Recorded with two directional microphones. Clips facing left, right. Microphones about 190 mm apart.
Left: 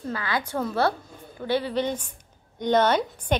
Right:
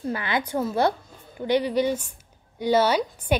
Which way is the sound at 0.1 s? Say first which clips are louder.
Right 1 dB; 20° right (ahead or behind).